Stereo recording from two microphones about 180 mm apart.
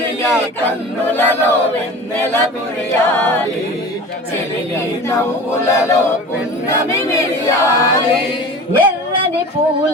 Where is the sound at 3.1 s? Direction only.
10° left (ahead or behind).